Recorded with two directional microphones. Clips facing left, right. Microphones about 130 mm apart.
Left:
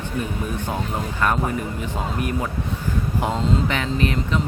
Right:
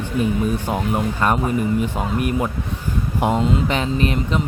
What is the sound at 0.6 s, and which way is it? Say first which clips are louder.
Speech: right 5 dB; 20° right (ahead or behind).